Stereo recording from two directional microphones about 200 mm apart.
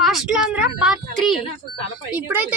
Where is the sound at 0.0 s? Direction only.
Centre (ahead or behind).